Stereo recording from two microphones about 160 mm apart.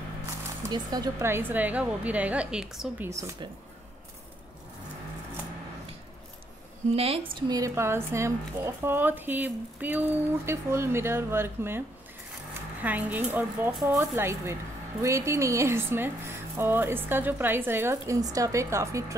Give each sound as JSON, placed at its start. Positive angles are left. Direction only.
{"t": 0.7, "sound": "a woman's voice", "side_deg": -25}
{"t": 3.1, "sound": "speech", "side_deg": -20}
{"t": 6.9, "sound": "a woman's voice", "side_deg": -40}
{"t": 7.4, "sound": "a woman's voice", "side_deg": -20}
{"t": 12.8, "sound": "a woman's voice", "side_deg": -10}